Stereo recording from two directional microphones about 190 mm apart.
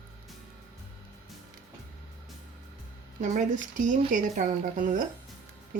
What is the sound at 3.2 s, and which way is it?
Speech, 40° right (ahead or behind).